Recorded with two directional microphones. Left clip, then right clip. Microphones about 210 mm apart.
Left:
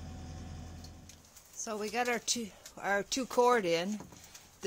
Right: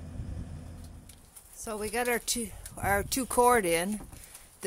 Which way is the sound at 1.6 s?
10° right (ahead or behind).